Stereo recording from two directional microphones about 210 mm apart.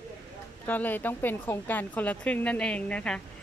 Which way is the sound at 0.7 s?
10° left (ahead or behind).